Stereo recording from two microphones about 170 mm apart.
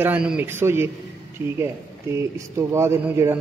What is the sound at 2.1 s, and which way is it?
Speech, 15° right (ahead or behind).